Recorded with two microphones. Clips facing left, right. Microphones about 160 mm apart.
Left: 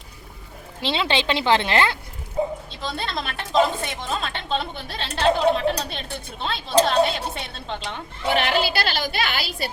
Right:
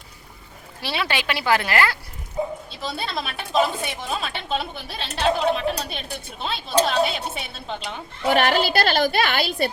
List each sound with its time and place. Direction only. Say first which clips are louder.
0.8 s a woman's voice: left 3 dB; 20° left (ahead or behind)
2.8 s speech: even; 5° right (ahead or behind)
8.3 s speech: right 2 dB; 50° right (ahead or behind)